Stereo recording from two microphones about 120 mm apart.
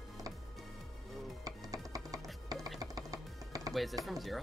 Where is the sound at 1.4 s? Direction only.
30° right (ahead or behind).